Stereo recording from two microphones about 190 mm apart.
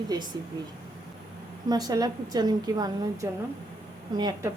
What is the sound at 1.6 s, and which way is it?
A woman's voice, 20° right (ahead or behind).